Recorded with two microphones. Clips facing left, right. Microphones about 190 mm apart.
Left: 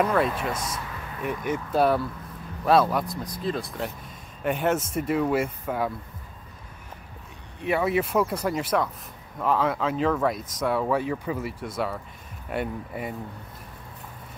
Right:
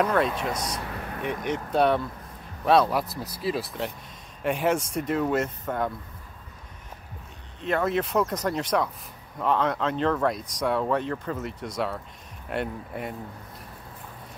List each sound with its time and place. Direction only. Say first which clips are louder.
0.0 s speech: even; centre (ahead or behind)
0.7 s a sound: right 2 dB; 60° right (ahead or behind)
1.4 s speech: even; 5° left (ahead or behind)
7.6 s speech: left 1 dB; 10° left (ahead or behind)